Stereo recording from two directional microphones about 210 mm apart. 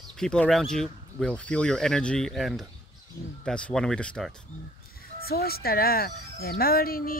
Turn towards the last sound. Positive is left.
turn(degrees=45)  # may be behind; listen again after turning